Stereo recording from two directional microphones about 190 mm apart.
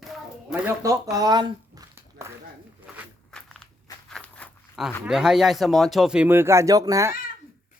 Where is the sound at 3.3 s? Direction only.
5° left (ahead or behind).